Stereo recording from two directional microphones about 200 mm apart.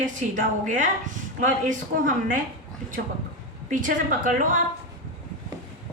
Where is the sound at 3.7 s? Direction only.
40° right (ahead or behind).